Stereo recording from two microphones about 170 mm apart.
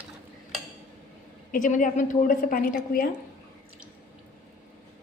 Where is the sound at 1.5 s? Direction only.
50° left (ahead or behind).